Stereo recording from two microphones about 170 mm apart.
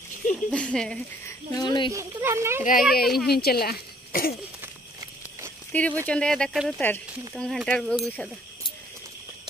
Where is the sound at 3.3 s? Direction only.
65° left (ahead or behind).